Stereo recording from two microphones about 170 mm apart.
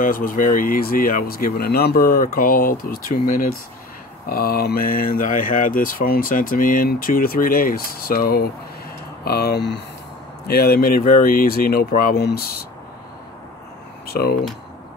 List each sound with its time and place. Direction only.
0.0 s speech: 55° left (ahead or behind)
14.0 s speech: 65° left (ahead or behind)